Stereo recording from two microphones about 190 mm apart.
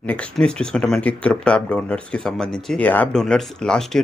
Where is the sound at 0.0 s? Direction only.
5° left (ahead or behind).